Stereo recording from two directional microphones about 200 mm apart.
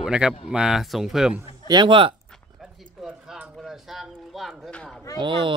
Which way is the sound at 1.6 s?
25° right (ahead or behind).